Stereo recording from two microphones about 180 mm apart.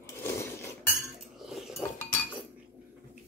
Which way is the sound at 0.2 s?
15° left (ahead or behind).